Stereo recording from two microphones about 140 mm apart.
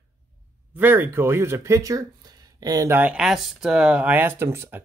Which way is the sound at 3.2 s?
Centre (ahead or behind).